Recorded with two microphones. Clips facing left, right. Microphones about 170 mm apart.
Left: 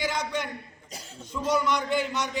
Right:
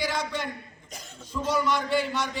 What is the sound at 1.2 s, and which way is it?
A man's voice, 20° left (ahead or behind).